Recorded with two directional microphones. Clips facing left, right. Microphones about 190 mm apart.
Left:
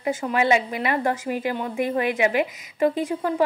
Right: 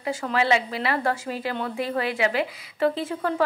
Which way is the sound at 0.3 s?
20° left (ahead or behind).